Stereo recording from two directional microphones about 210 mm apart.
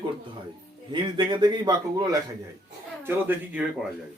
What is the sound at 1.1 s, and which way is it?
Speech, 20° right (ahead or behind).